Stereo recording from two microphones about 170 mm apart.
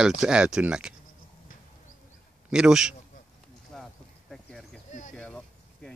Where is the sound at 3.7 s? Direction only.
Centre (ahead or behind).